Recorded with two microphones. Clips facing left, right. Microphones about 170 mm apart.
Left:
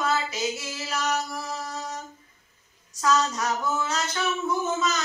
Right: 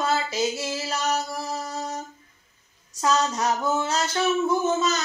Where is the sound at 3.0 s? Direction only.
25° right (ahead or behind).